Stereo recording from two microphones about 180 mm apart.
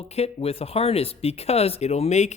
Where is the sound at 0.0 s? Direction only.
35° left (ahead or behind).